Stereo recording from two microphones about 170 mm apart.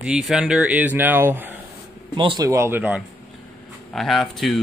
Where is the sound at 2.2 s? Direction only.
30° right (ahead or behind).